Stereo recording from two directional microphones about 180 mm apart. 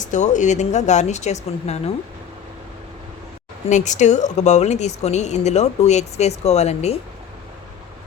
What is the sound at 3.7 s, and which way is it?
Speech, 40° left (ahead or behind).